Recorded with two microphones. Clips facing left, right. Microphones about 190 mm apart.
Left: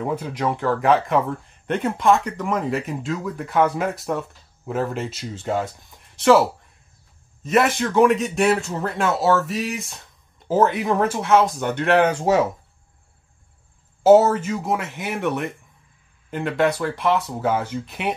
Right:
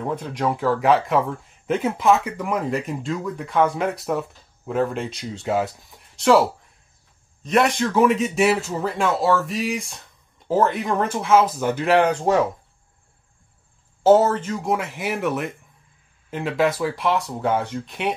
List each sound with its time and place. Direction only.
0.0 s speech: 5° left (ahead or behind)
14.0 s speech: 10° left (ahead or behind)